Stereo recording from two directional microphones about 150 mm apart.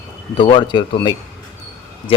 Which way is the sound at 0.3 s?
35° left (ahead or behind).